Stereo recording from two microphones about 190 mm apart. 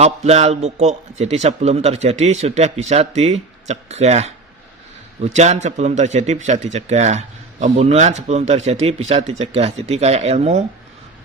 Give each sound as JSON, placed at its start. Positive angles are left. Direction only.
{"t": 0.0, "sound": "speech", "side_deg": -35}